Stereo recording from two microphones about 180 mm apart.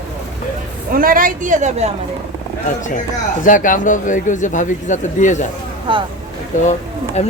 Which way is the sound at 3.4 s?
50° left (ahead or behind).